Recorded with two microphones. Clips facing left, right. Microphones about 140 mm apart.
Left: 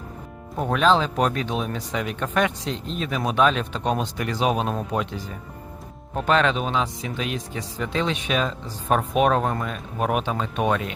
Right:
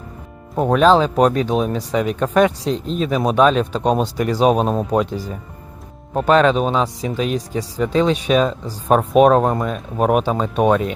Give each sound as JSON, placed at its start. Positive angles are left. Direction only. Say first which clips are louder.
{"t": 0.5, "sound": "speech", "louder": "right 7 dB", "side_deg": -45}